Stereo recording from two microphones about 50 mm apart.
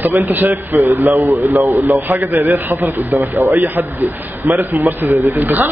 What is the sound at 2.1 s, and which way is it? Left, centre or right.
A man's voice, right.